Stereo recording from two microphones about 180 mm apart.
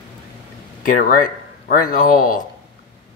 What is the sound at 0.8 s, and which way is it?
Speech, 50° left (ahead or behind).